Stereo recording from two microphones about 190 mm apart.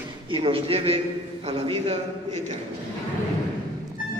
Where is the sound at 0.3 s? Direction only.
30° right (ahead or behind).